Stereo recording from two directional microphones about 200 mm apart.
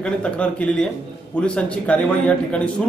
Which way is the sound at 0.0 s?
5° left (ahead or behind).